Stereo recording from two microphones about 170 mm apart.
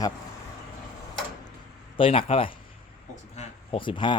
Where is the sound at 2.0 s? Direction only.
30° left (ahead or behind).